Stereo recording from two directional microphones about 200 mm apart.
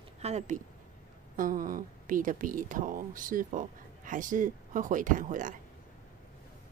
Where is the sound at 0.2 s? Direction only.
35° right (ahead or behind).